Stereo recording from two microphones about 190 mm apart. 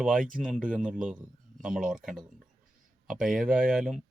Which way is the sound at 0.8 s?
5° right (ahead or behind).